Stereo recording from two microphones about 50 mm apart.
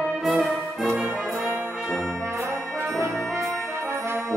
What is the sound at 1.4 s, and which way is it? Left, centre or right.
Brass instrument, right.